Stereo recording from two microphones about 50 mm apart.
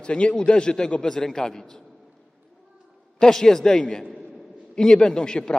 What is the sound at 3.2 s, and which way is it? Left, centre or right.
A man's voice, centre.